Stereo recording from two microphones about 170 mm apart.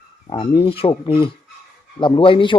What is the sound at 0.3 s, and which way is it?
A man's voice, 30° left (ahead or behind).